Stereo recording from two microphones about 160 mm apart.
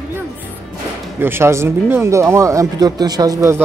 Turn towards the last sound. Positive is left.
turn(degrees=-20)  # may be behind; listen again after turning